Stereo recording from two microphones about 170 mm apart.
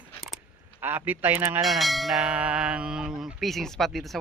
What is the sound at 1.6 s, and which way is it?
Speech, centre (ahead or behind).